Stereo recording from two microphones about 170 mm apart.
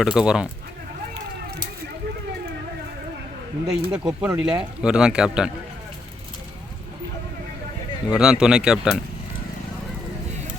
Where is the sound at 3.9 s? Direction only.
5° right (ahead or behind).